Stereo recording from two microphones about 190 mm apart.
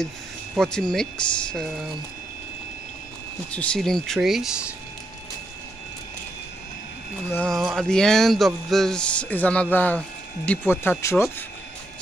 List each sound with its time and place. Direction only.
0.6 s speech: 5° left (ahead or behind)
3.5 s speech: 5° left (ahead or behind)
7.3 s speech: centre (ahead or behind)